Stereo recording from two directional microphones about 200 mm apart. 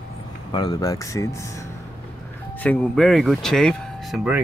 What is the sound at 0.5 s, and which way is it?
Speech, 20° left (ahead or behind).